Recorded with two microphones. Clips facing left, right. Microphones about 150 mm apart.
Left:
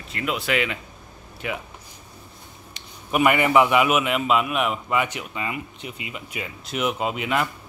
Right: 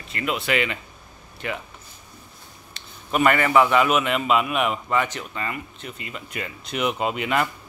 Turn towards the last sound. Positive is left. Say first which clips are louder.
# right 1 dB
turn(degrees=0)  # may be behind; listen again after turning